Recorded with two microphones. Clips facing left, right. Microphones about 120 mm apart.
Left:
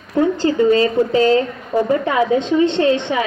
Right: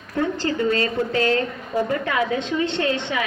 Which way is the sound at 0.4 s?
25° left (ahead or behind).